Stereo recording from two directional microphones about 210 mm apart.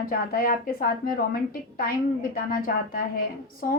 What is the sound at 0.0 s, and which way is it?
A woman's voice, 45° left (ahead or behind).